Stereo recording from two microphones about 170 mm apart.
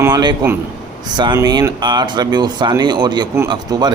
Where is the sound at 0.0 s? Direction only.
25° right (ahead or behind).